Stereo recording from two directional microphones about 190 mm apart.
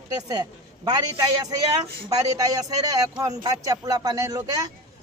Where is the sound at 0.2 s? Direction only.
20° right (ahead or behind).